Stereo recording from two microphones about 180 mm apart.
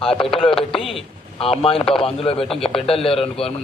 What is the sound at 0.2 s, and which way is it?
A man's voice, 30° left (ahead or behind).